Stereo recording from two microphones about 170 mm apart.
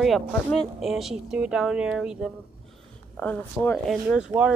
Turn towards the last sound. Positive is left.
turn(degrees=-5)  # may be behind; listen again after turning